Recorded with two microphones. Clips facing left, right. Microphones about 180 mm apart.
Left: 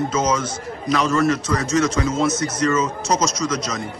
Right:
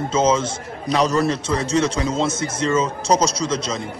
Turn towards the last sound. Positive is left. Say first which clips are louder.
# right 1 dB
turn(degrees=-30)  # may be behind; listen again after turning